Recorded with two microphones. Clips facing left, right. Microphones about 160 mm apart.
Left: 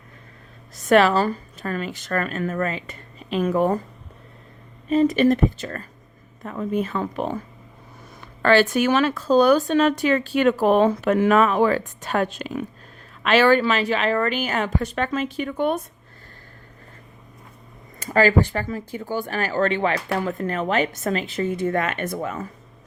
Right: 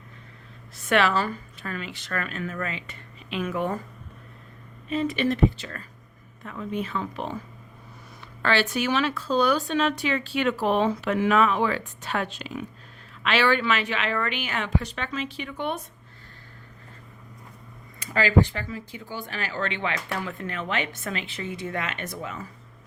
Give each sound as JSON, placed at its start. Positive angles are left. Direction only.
{"t": 0.8, "sound": "speech", "side_deg": 40}
{"t": 4.9, "sound": "speech", "side_deg": 40}
{"t": 18.0, "sound": "speech", "side_deg": 45}